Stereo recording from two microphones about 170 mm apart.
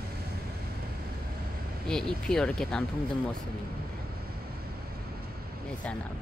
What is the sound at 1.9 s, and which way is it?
Speech, 5° left (ahead or behind).